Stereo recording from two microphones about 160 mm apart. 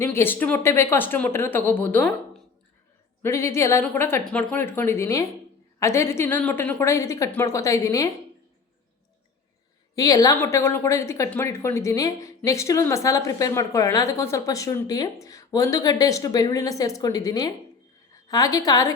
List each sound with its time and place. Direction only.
0.0 s a woman's voice: 15° left (ahead or behind)
3.2 s a woman's voice: 15° left (ahead or behind)
9.9 s a woman's voice: 25° left (ahead or behind)